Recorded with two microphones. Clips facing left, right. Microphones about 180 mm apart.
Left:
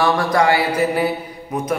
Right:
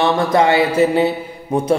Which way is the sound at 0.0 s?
25° right (ahead or behind).